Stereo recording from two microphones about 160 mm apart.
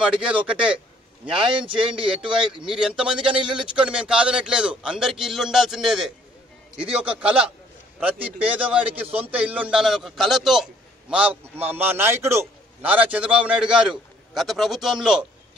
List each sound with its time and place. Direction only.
0.2 s a man's voice: 5° right (ahead or behind)
1.3 s a man's voice: 35° right (ahead or behind)
2.6 s a man's voice: 5° right (ahead or behind)